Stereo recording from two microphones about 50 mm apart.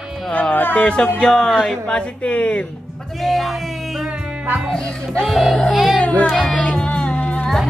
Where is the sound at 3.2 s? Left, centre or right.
Centre.